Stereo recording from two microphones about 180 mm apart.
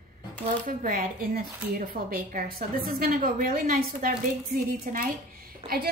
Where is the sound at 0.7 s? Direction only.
50° right (ahead or behind).